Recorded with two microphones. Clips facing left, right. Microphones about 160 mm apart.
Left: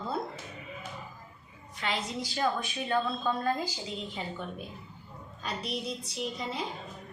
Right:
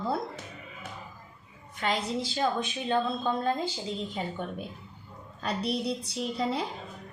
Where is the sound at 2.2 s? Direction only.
25° right (ahead or behind).